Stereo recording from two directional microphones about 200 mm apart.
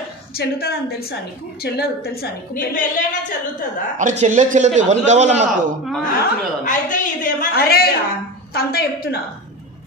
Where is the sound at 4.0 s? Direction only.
40° right (ahead or behind).